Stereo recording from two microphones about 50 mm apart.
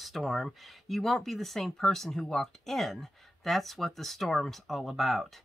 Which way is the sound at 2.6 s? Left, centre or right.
Centre.